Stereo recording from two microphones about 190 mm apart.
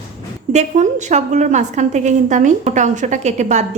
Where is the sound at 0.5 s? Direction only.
40° right (ahead or behind).